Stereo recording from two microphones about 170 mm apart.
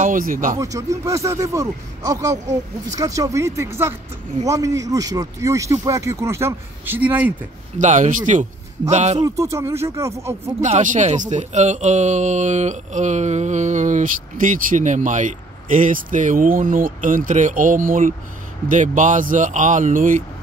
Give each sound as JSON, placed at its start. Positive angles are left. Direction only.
{"t": 0.0, "sound": "speech", "side_deg": -50}
{"t": 0.6, "sound": "speech", "side_deg": -20}
{"t": 7.8, "sound": "speech", "side_deg": -45}
{"t": 9.2, "sound": "speech", "side_deg": -15}
{"t": 10.6, "sound": "speech", "side_deg": -45}